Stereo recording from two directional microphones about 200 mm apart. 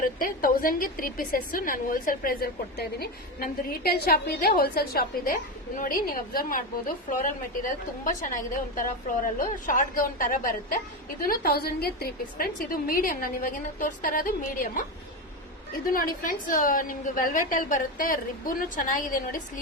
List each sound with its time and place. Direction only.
0.0 s a woman's voice: 45° left (ahead or behind)
15.9 s a woman's voice: 45° left (ahead or behind)